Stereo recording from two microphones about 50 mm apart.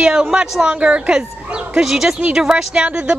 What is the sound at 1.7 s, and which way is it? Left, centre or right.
A woman's voice, centre.